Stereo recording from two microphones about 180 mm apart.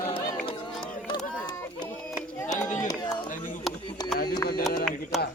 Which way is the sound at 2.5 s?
45° left (ahead or behind).